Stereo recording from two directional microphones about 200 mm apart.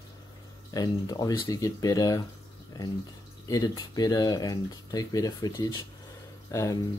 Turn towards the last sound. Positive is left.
turn(degrees=15)  # may be behind; listen again after turning